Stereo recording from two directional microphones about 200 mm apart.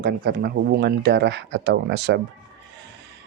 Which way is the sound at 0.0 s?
55° right (ahead or behind).